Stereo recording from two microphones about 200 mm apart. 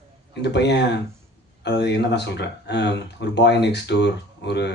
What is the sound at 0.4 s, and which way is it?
Speech, 55° left (ahead or behind).